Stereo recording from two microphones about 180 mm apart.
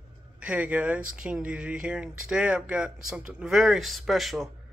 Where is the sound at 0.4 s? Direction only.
5° right (ahead or behind).